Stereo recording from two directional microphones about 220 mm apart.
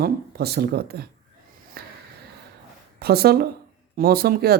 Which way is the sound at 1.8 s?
45° right (ahead or behind).